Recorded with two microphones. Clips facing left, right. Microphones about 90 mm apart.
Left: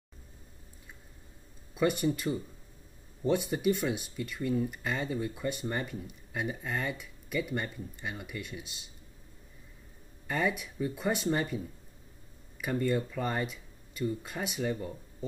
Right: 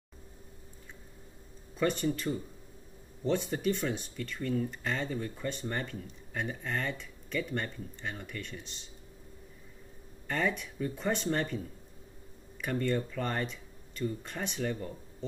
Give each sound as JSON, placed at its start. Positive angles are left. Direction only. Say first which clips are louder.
{"t": 1.8, "sound": "speech", "louder": "left 2 dB", "side_deg": 10}
{"t": 10.2, "sound": "speech", "louder": "left 1 dB", "side_deg": 10}
{"t": 12.6, "sound": "speech", "louder": "left 1 dB", "side_deg": 10}